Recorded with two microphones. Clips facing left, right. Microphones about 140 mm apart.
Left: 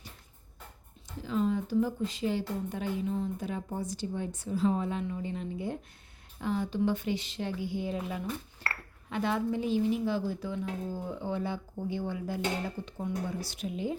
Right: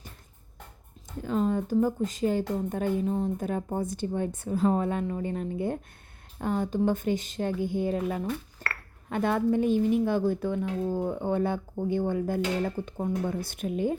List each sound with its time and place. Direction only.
1.2 s a woman's voice: 45° right (ahead or behind)